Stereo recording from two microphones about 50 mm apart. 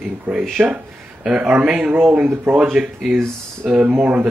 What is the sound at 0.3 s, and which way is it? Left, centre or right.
Speech, right.